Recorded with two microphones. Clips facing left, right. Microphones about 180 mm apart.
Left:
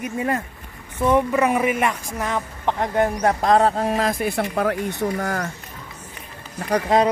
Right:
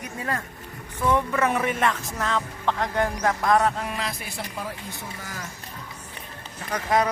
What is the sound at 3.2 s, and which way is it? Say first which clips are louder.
Speech: left 4 dB; 30° left (ahead or behind).